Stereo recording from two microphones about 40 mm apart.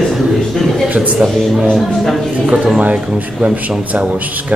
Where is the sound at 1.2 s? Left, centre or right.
Centre.